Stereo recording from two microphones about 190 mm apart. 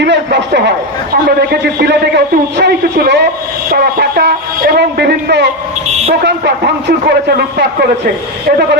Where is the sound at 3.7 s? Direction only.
55° right (ahead or behind).